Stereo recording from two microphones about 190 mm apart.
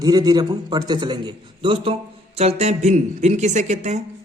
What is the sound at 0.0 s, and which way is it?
A woman's voice, 20° right (ahead or behind).